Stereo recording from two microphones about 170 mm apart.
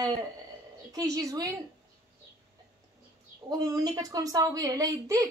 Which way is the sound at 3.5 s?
20° right (ahead or behind).